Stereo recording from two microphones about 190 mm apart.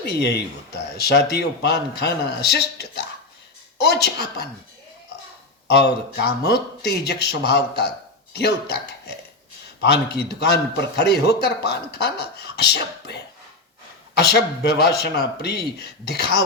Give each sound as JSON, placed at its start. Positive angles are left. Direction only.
{"t": 0.0, "sound": "a man's voice", "side_deg": 60}
{"t": 5.6, "sound": "a man's voice", "side_deg": 60}
{"t": 14.2, "sound": "a man's voice", "side_deg": 60}